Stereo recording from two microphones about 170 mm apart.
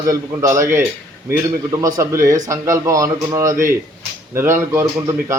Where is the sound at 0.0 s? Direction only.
20° right (ahead or behind).